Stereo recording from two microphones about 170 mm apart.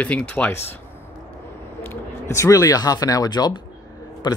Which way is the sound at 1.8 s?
15° left (ahead or behind).